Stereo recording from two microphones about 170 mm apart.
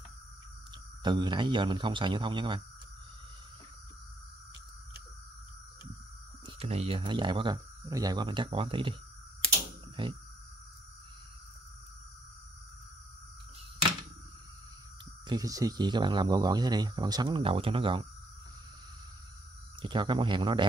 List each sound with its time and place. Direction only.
1.0 s speech: 25° right (ahead or behind)
6.4 s speech: 35° right (ahead or behind)
10.0 s music: 30° right (ahead or behind)
15.2 s speech: 20° right (ahead or behind)
19.8 s speech: 30° right (ahead or behind)